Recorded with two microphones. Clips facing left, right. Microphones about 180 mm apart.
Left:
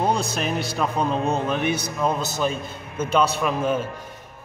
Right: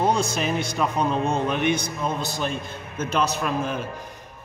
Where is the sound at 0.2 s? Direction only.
Centre (ahead or behind).